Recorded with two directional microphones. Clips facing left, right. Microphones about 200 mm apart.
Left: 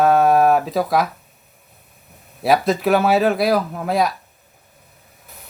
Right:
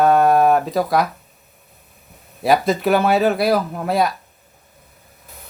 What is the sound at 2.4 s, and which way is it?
Speech, centre (ahead or behind).